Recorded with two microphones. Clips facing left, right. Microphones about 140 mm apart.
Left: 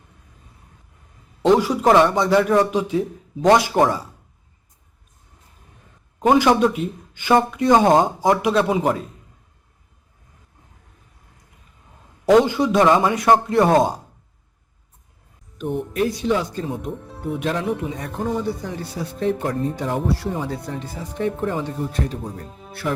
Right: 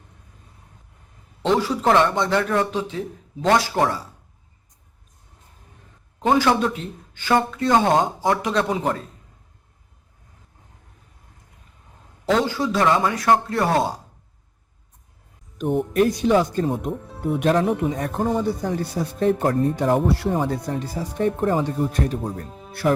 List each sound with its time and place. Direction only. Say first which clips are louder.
1.4 s speech: left 4 dB; 10° left (ahead or behind)
6.2 s speech: left 3 dB; 15° left (ahead or behind)
12.3 s a man's voice: left 6 dB; 15° left (ahead or behind)
15.5 s speech: right 4 dB; 45° right (ahead or behind)
20.8 s speech: right 1 dB; 35° right (ahead or behind)